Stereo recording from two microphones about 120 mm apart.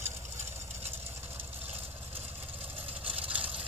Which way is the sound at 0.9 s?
20° right (ahead or behind).